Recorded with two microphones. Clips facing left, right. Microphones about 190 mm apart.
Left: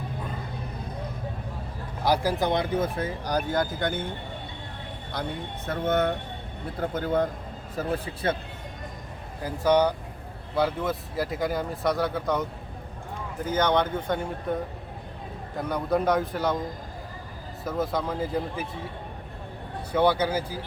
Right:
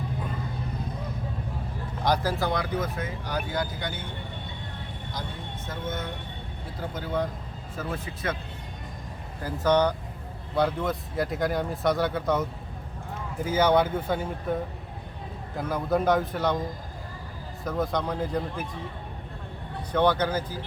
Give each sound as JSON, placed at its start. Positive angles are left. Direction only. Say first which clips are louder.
{"t": 2.0, "sound": "speech", "louder": "left 2 dB", "side_deg": 10}
{"t": 5.6, "sound": "speech", "louder": "left 9 dB", "side_deg": 65}
{"t": 7.8, "sound": "speech", "louder": "left 4 dB", "side_deg": 35}
{"t": 9.4, "sound": "speech", "louder": "left 1 dB", "side_deg": 10}
{"t": 15.5, "sound": "speech", "louder": "even", "side_deg": 0}
{"t": 17.6, "sound": "speech", "louder": "even", "side_deg": 5}
{"t": 19.9, "sound": "speech", "louder": "left 1 dB", "side_deg": 10}